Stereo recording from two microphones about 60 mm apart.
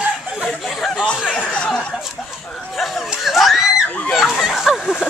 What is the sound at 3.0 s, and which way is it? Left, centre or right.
Screaming, centre.